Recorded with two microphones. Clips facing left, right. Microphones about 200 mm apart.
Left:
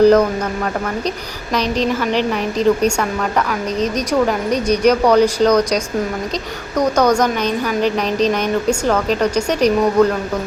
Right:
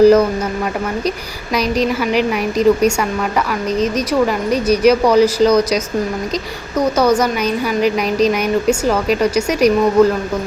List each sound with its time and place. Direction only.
0.0 s speech: 5° right (ahead or behind)
1.5 s speech: 10° right (ahead or behind)
2.6 s speech: 30° left (ahead or behind)
4.3 s speech: 5° right (ahead or behind)